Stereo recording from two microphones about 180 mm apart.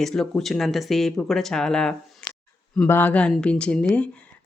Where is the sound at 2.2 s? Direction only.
5° left (ahead or behind).